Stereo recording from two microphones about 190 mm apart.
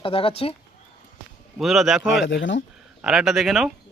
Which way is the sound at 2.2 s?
75° left (ahead or behind).